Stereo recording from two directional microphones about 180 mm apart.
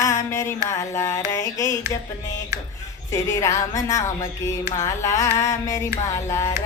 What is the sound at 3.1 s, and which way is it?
Speech, 15° left (ahead or behind).